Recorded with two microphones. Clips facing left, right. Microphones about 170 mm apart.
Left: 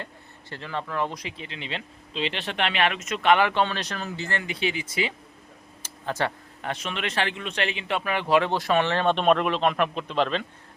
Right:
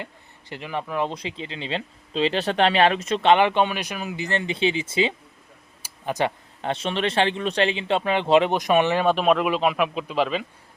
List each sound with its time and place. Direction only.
0.5 s speech: 15° right (ahead or behind)
1.1 s speech: 25° right (ahead or behind); by 10.4 s 5° right (ahead or behind)